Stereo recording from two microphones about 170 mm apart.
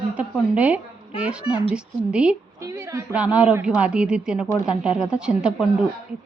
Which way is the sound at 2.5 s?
20° right (ahead or behind).